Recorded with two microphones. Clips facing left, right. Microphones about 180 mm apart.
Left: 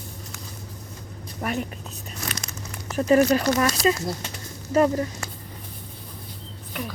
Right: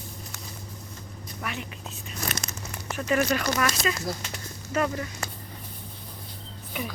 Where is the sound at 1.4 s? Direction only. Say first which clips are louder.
Left 8 dB; 40° left (ahead or behind).